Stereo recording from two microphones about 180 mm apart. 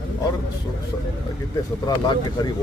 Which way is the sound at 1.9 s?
20° left (ahead or behind).